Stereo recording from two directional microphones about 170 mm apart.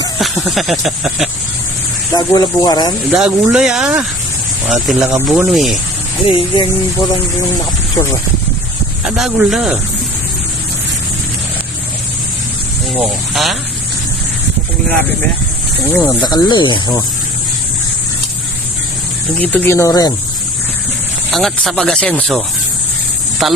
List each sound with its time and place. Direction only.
0.2 s speech: centre (ahead or behind)
2.1 s speech: 25° left (ahead or behind)
3.1 s speech: 5° right (ahead or behind)
6.2 s speech: 25° left (ahead or behind)
9.0 s speech: 5° right (ahead or behind)
13.0 s speech: centre (ahead or behind)
15.9 s speech: 15° left (ahead or behind)
16.3 s speech: 25° left (ahead or behind)
19.4 s speech: 10° left (ahead or behind)
21.3 s speech: centre (ahead or behind)
23.4 s speech: centre (ahead or behind)